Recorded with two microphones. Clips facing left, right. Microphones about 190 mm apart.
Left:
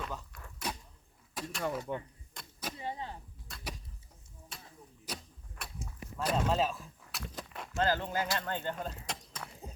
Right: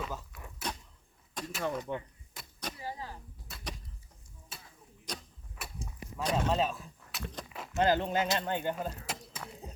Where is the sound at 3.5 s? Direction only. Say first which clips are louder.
Even; 5° right (ahead or behind).